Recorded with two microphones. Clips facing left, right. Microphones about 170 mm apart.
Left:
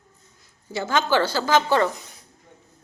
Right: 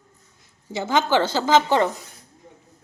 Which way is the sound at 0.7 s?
20° right (ahead or behind).